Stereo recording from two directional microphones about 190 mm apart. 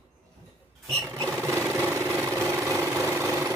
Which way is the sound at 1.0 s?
15° right (ahead or behind).